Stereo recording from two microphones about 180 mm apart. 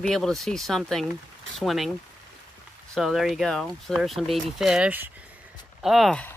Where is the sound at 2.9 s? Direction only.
Centre (ahead or behind).